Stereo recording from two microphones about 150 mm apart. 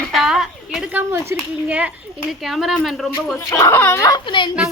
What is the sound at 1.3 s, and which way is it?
Speech, 15° right (ahead or behind).